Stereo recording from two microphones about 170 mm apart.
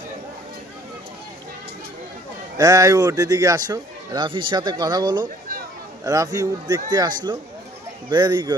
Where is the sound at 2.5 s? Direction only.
20° right (ahead or behind).